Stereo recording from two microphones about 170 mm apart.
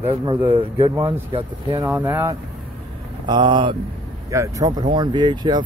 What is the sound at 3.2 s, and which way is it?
Speech, 25° right (ahead or behind).